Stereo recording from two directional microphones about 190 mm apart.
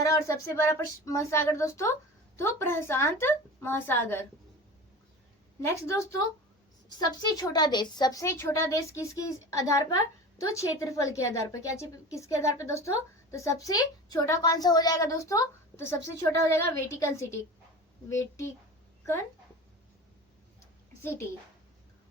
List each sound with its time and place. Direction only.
0.0 s a woman's voice: 15° left (ahead or behind)
5.5 s a woman's voice: 15° left (ahead or behind)
7.2 s a woman's voice: 20° left (ahead or behind)
21.0 s a woman's voice: 15° left (ahead or behind)